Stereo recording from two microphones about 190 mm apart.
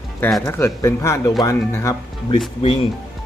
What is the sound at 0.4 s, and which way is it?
Speech, 15° left (ahead or behind).